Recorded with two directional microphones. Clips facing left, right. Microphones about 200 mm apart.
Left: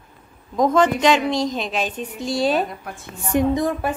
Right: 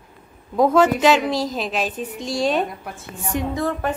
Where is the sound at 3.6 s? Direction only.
15° left (ahead or behind).